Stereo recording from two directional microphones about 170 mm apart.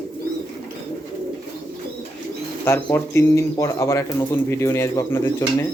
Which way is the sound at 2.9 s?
15° left (ahead or behind).